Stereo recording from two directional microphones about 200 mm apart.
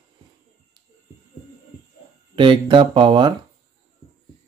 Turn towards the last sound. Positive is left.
turn(degrees=-25)  # may be behind; listen again after turning